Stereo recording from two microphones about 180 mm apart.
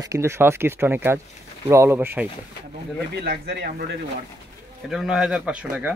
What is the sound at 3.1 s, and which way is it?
Speech, 60° right (ahead or behind).